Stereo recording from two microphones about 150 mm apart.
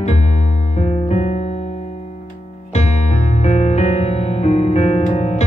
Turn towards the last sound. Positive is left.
turn(degrees=50)  # may be behind; listen again after turning